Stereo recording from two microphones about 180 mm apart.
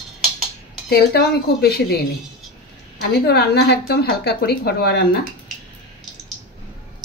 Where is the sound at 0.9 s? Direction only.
60° left (ahead or behind).